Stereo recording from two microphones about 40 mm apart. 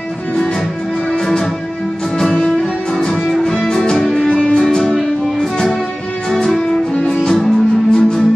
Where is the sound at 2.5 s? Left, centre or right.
Centre.